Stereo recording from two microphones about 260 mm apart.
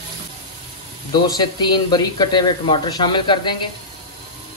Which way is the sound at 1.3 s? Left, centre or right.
Centre.